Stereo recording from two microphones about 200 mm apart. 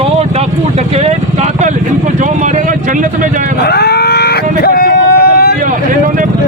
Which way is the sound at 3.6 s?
55° left (ahead or behind).